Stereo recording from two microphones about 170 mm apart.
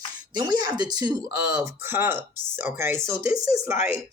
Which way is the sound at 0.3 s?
25° right (ahead or behind).